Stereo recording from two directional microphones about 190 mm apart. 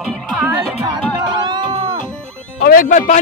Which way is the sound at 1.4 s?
20° right (ahead or behind).